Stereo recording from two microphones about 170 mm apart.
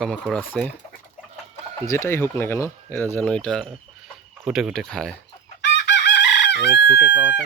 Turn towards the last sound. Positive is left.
turn(degrees=-10)  # may be behind; listen again after turning